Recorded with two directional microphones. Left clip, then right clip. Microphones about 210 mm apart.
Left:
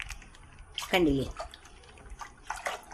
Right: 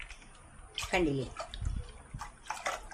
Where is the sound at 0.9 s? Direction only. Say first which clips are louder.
Left 5 dB; 30° left (ahead or behind).